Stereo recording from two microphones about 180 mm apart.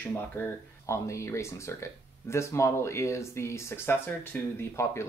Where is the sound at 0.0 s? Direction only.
10° left (ahead or behind).